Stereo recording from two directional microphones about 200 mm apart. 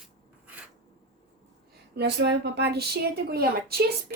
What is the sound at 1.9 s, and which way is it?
Speech, 55° right (ahead or behind).